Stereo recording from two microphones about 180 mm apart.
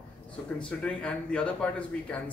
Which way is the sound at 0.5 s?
5° left (ahead or behind).